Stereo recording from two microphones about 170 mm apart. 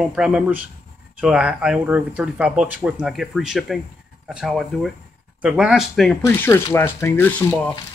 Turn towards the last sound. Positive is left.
turn(degrees=10)  # may be behind; listen again after turning